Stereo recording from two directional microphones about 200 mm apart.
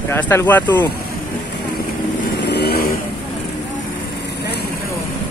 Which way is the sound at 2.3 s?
55° left (ahead or behind).